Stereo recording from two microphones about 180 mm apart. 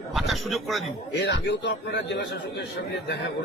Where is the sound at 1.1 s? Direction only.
70° left (ahead or behind).